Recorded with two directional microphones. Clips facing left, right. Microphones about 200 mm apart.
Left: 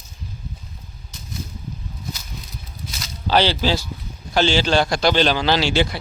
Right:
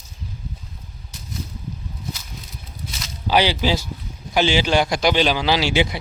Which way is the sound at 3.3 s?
15° right (ahead or behind).